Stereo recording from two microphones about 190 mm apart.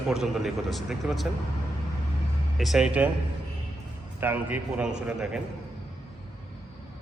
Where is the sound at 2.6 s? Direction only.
Centre (ahead or behind).